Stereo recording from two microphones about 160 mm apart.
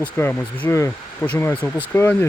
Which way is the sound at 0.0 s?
10° left (ahead or behind).